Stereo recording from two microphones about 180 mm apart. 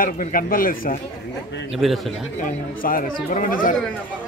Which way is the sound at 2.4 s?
50° left (ahead or behind).